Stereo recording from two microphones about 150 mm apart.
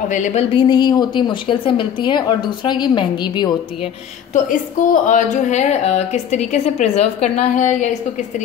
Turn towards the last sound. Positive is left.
turn(degrees=55)  # may be behind; listen again after turning